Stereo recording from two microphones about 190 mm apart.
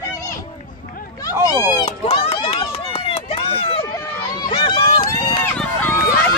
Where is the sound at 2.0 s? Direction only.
30° left (ahead or behind).